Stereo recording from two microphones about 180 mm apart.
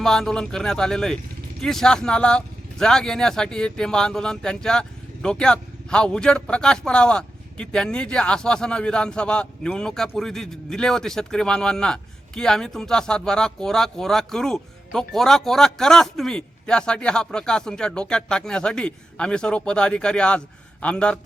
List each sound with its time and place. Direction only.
0.0 s speech: 5° left (ahead or behind)